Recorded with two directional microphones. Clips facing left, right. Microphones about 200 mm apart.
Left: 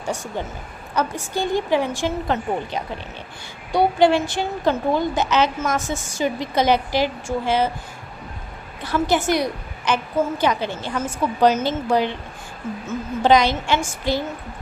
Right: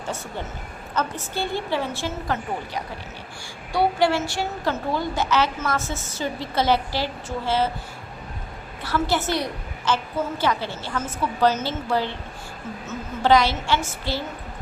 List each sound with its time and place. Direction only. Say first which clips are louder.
0.0 s a woman's voice: left 4 dB; 15° left (ahead or behind)
8.8 s a woman's voice: left 3 dB; 15° left (ahead or behind)